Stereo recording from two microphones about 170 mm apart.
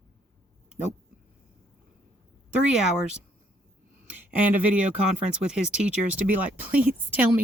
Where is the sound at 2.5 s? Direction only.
5° right (ahead or behind).